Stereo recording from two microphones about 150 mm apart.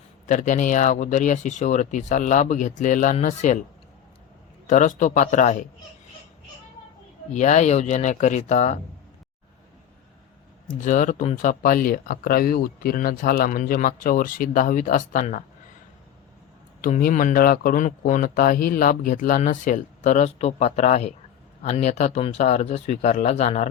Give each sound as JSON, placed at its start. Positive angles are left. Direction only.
{"t": 0.3, "sound": "speech", "side_deg": 55}
{"t": 4.6, "sound": "speech", "side_deg": 55}
{"t": 7.3, "sound": "speech", "side_deg": 50}
{"t": 10.7, "sound": "speech", "side_deg": 55}
{"t": 16.8, "sound": "speech", "side_deg": 65}